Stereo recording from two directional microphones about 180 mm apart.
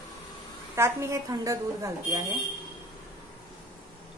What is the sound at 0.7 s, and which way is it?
Speech, 15° right (ahead or behind).